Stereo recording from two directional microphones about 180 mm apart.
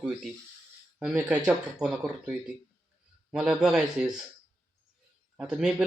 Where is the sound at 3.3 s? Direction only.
5° right (ahead or behind).